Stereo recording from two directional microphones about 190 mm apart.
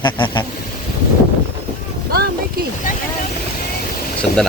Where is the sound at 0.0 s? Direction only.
25° left (ahead or behind).